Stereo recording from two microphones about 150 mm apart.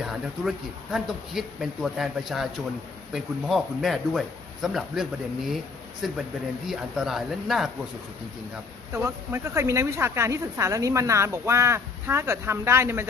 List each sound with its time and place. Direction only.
0.0 s speech: 5° right (ahead or behind)
6.0 s speech: centre (ahead or behind)
8.9 s speech: 15° right (ahead or behind)